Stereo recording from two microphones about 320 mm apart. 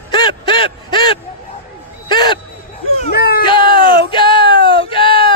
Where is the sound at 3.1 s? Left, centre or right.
Left.